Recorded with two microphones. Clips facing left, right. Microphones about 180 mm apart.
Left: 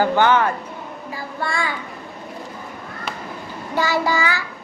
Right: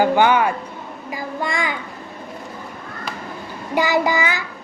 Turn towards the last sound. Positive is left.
turn(degrees=-20)  # may be behind; listen again after turning